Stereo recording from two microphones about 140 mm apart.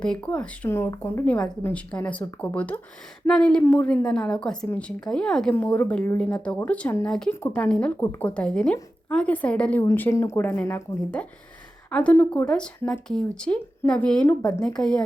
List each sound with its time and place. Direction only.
0.0 s speech: 10° left (ahead or behind)